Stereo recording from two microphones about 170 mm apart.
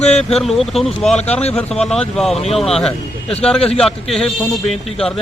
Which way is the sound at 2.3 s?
35° left (ahead or behind).